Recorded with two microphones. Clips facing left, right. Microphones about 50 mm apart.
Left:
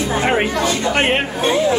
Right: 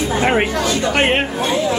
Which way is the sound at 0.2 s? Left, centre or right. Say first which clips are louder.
Right 1 dB; centre.